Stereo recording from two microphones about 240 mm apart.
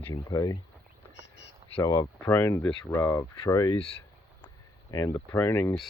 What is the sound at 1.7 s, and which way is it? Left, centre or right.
Speech, centre.